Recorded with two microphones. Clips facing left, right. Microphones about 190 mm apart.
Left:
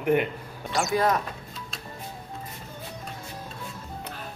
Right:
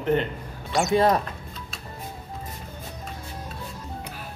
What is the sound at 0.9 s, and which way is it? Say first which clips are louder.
Speech: right 4 dB; 30° right (ahead or behind).